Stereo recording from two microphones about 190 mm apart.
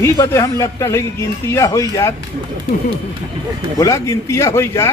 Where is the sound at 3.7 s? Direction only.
15° left (ahead or behind).